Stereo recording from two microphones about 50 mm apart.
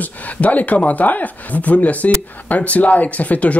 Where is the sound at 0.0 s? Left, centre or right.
Left.